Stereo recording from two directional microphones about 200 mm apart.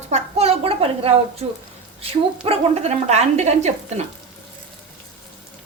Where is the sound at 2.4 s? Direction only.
30° right (ahead or behind).